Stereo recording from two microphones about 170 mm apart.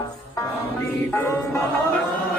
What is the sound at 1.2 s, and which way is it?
Music, 15° left (ahead or behind).